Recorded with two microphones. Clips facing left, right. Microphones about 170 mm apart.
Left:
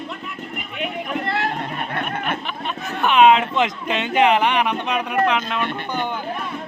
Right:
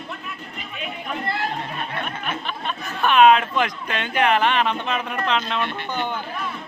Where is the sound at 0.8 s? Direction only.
75° left (ahead or behind).